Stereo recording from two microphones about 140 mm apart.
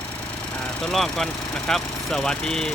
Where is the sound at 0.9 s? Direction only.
Centre (ahead or behind).